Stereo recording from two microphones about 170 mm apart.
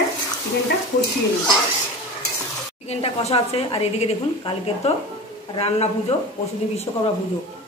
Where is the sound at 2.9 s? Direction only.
40° left (ahead or behind).